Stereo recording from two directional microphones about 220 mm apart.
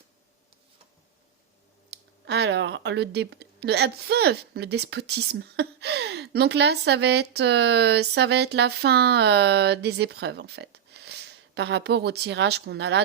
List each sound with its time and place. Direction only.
2.2 s a woman's voice: 50° right (ahead or behind)